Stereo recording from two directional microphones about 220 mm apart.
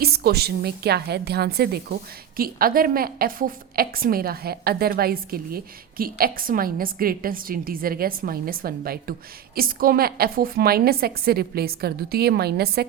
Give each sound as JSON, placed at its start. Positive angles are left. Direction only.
{"t": 0.0, "sound": "a woman's voice", "side_deg": -45}